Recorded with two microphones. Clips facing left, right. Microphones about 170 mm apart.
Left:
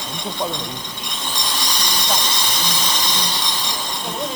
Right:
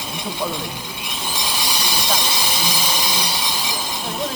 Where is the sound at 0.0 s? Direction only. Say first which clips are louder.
Even; 5° right (ahead or behind).